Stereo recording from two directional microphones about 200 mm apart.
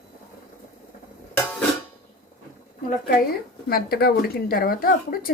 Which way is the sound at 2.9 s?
45° left (ahead or behind).